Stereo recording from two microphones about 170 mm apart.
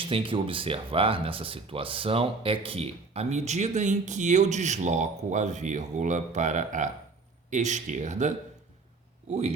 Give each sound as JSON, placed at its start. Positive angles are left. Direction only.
{"t": 0.0, "sound": "speech", "side_deg": -30}
{"t": 9.3, "sound": "speech", "side_deg": -40}